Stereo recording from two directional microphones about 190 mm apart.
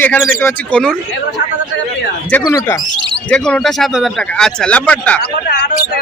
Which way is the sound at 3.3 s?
5° left (ahead or behind).